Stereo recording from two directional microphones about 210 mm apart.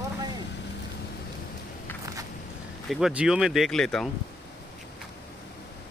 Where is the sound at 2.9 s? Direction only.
Centre (ahead or behind).